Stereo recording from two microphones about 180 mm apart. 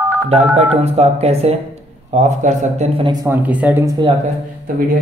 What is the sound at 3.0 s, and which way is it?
Speech, 15° right (ahead or behind).